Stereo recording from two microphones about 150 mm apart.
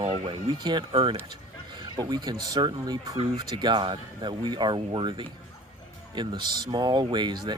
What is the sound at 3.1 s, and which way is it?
Speech, 40° right (ahead or behind).